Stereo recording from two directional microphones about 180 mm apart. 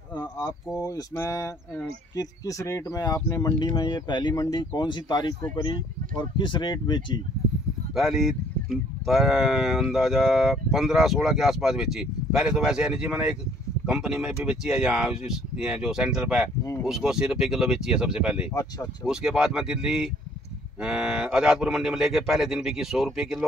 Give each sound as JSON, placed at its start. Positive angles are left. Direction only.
{"t": 0.1, "sound": "a sound", "side_deg": 20}
{"t": 2.1, "sound": "speech", "side_deg": 20}
{"t": 7.9, "sound": "speech", "side_deg": 0}
{"t": 18.5, "sound": "speech", "side_deg": 20}
{"t": 19.0, "sound": "speech", "side_deg": -5}